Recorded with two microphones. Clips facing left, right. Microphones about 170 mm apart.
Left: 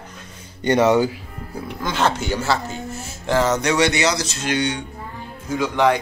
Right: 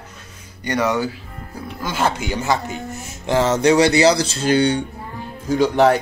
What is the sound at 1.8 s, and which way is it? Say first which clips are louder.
Speech: even; 10° right (ahead or behind).